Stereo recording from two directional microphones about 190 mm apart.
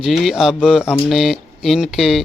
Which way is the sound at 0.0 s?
Centre (ahead or behind).